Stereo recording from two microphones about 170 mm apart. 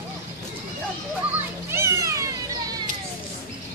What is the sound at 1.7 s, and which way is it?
Cat, 15° right (ahead or behind).